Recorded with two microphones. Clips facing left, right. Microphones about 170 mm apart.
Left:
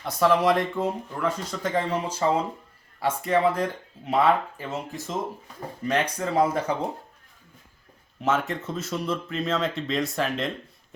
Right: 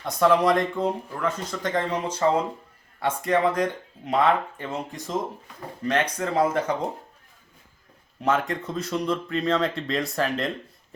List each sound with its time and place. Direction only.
0.0 s speech: 5° left (ahead or behind)
8.2 s speech: centre (ahead or behind)